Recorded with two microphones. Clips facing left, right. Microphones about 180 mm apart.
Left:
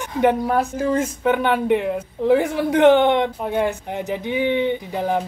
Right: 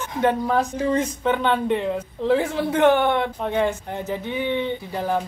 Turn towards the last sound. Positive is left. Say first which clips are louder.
# left 2 dB
turn(degrees=15)  # may be behind; listen again after turning